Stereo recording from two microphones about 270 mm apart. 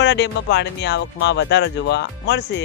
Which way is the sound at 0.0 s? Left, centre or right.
Left.